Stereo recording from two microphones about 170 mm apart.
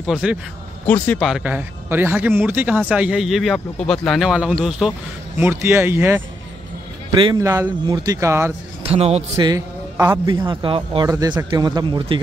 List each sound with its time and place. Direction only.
0.0 s speech: 5° right (ahead or behind)
1.0 s speech: 10° left (ahead or behind)
1.3 s a man's voice: 10° right (ahead or behind)
5.4 s a man's voice: 15° right (ahead or behind)
7.3 s a man's voice: 20° right (ahead or behind)
8.8 s a man's voice: 35° right (ahead or behind)
9.4 s a man's voice: 20° right (ahead or behind)